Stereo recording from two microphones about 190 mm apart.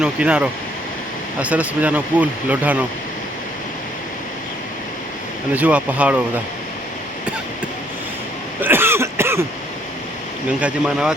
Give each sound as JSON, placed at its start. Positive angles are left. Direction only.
{"t": 0.0, "sound": "speech", "side_deg": -5}
{"t": 5.5, "sound": "speech", "side_deg": -10}
{"t": 8.6, "sound": "cough", "side_deg": -10}
{"t": 10.6, "sound": "speech", "side_deg": -5}